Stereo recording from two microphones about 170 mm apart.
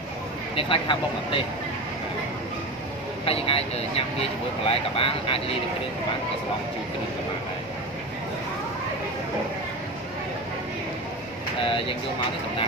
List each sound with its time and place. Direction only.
0.6 s speech: 30° left (ahead or behind)
3.3 s speech: 35° left (ahead or behind)